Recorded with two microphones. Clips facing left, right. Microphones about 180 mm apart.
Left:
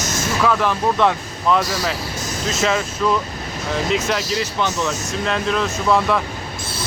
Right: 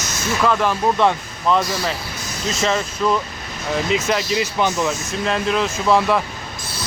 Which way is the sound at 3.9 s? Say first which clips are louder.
Right 1 dB; centre (ahead or behind).